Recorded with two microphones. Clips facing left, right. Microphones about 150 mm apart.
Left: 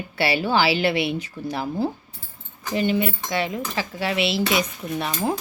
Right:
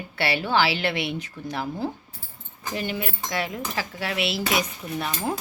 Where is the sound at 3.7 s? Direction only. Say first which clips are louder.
Left 4 dB; centre (ahead or behind).